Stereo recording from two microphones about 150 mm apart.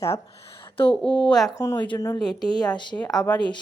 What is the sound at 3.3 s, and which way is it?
Speech, 30° left (ahead or behind).